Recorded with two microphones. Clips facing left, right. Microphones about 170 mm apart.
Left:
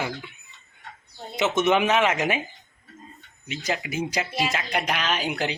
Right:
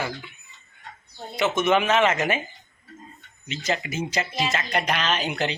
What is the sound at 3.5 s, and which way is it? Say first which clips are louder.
A man's voice: right 1 dB; 10° left (ahead or behind).